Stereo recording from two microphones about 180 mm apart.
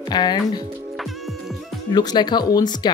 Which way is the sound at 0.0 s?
25° left (ahead or behind).